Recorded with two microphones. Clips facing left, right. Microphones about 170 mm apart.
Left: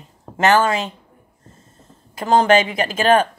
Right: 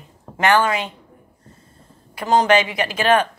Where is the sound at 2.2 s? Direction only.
50° left (ahead or behind).